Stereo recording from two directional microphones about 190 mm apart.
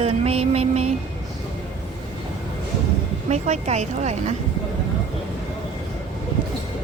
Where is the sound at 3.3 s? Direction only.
35° right (ahead or behind).